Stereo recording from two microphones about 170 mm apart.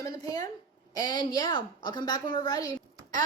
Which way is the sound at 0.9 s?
25° left (ahead or behind).